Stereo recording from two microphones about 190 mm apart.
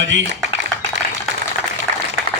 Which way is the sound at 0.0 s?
70° right (ahead or behind).